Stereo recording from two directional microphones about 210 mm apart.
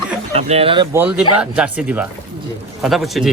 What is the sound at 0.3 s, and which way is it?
Speech, 30° right (ahead or behind).